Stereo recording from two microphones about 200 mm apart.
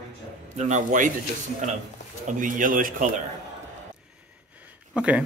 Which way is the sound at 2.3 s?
40° right (ahead or behind).